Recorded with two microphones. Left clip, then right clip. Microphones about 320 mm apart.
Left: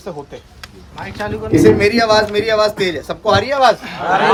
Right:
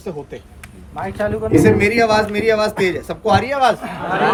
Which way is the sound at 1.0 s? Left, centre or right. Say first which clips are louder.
Right 3 dB; centre.